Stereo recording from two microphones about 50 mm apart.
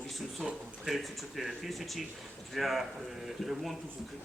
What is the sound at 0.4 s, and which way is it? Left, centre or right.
Speech, centre.